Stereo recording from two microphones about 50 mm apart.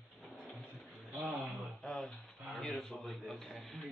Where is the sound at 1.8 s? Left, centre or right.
Centre.